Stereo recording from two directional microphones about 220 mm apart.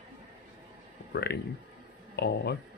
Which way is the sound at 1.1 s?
45° left (ahead or behind).